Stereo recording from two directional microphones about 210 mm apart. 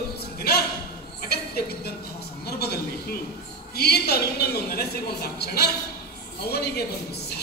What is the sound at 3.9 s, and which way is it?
A woman's voice, 50° left (ahead or behind).